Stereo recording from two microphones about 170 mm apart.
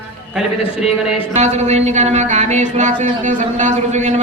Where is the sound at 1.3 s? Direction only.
40° right (ahead or behind).